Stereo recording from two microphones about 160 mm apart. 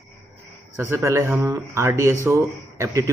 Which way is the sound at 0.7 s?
15° right (ahead or behind).